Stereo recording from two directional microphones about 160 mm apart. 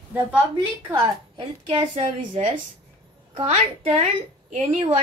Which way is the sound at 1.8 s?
45° right (ahead or behind).